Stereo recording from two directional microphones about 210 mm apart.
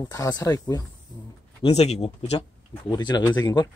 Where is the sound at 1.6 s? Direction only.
30° left (ahead or behind).